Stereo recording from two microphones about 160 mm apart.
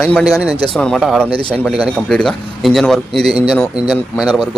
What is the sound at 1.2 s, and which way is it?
Speech, 35° right (ahead or behind).